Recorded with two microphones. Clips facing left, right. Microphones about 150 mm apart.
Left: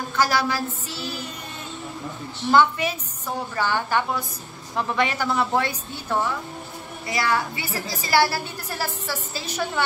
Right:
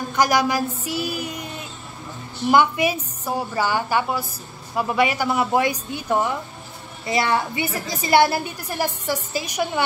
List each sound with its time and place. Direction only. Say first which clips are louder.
0.1 s a woman's voice: right 3 dB; 15° right (ahead or behind)
2.5 s a woman's voice: right 1 dB; 15° right (ahead or behind)